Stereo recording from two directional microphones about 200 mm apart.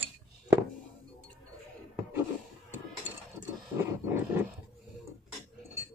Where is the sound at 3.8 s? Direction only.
10° right (ahead or behind).